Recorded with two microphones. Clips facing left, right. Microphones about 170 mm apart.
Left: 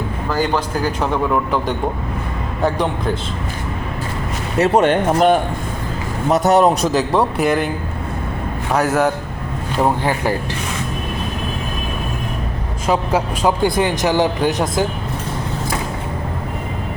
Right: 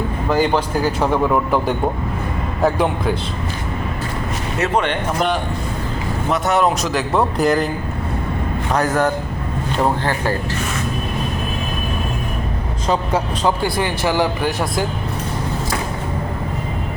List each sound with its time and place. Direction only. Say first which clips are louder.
0.3 s speech: right 2 dB; 15° right (ahead or behind)
4.6 s speech: left 6 dB; 45° left (ahead or behind)
7.1 s speech: even; 10° left (ahead or behind)
8.7 s speech: left 2 dB; 5° left (ahead or behind)
12.9 s speech: left 2 dB; 10° left (ahead or behind)